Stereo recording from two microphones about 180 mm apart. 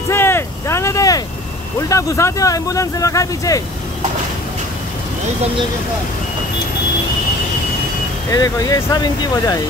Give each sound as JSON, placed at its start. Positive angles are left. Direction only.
{"t": 0.1, "sound": "vehicle", "side_deg": 15}
{"t": 1.8, "sound": "speech", "side_deg": 15}
{"t": 8.3, "sound": "speech", "side_deg": 20}